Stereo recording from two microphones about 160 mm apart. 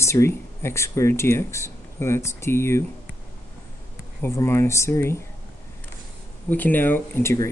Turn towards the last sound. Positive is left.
turn(degrees=15)  # may be behind; listen again after turning